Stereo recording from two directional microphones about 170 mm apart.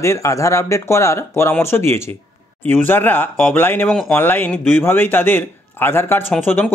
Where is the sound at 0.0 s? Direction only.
15° left (ahead or behind).